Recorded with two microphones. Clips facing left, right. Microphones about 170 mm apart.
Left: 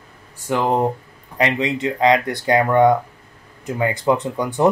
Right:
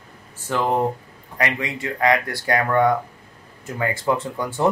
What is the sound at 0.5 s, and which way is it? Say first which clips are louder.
Speech: left 2 dB; 15° left (ahead or behind).